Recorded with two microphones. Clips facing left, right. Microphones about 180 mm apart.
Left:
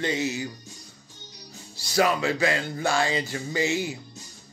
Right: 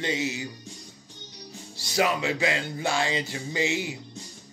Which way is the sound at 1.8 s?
20° right (ahead or behind).